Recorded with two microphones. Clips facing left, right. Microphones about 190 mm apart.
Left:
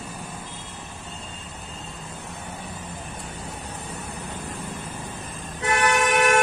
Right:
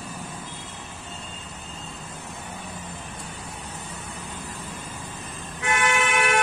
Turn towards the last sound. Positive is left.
turn(degrees=40)  # may be behind; listen again after turning